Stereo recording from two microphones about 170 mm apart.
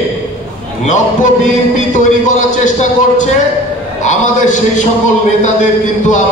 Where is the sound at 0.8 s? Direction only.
45° left (ahead or behind).